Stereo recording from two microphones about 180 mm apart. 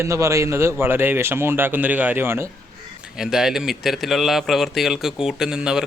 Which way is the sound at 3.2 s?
5° right (ahead or behind).